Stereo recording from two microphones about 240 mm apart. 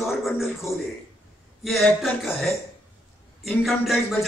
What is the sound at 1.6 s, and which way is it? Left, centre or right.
A man's voice, centre.